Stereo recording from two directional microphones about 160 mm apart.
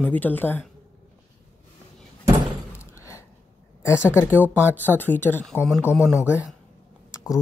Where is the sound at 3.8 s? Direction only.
15° left (ahead or behind).